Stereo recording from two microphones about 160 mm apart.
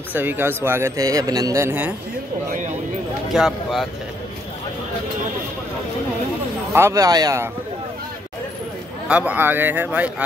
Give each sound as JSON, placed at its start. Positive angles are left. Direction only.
{"t": 0.1, "sound": "speech", "side_deg": -10}
{"t": 3.3, "sound": "speech", "side_deg": 0}
{"t": 6.7, "sound": "speech", "side_deg": -20}
{"t": 9.0, "sound": "speech", "side_deg": -10}